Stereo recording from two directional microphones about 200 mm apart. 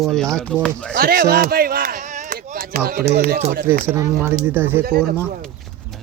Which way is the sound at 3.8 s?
15° right (ahead or behind).